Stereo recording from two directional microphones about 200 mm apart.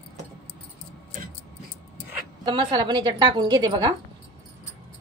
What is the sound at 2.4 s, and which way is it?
A woman's voice, 25° right (ahead or behind).